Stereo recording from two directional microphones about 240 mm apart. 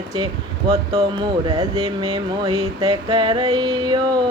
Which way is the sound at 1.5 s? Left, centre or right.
Centre.